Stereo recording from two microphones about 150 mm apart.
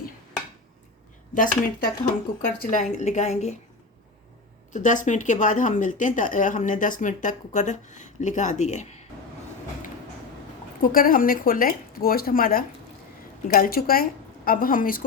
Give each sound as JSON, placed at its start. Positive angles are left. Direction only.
{"t": 1.3, "sound": "a woman's voice", "side_deg": 65}
{"t": 4.7, "sound": "speech", "side_deg": 55}
{"t": 10.8, "sound": "speech", "side_deg": 70}